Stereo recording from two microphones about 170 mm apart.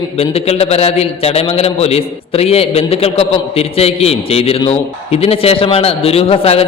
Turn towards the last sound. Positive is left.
turn(degrees=35)  # may be behind; listen again after turning